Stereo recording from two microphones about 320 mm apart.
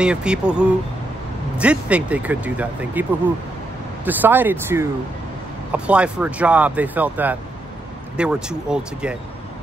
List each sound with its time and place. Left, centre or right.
0.0 s speech: centre